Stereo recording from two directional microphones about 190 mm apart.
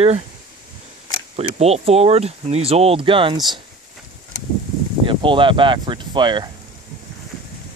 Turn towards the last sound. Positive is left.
turn(degrees=-25)  # may be behind; listen again after turning